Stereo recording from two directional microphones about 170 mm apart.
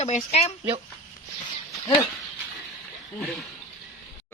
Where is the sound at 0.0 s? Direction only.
40° left (ahead or behind).